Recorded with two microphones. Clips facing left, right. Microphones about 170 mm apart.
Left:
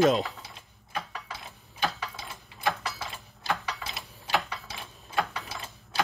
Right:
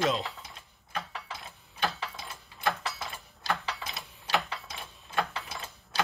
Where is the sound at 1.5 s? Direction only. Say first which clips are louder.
Left 1 dB; 20° left (ahead or behind).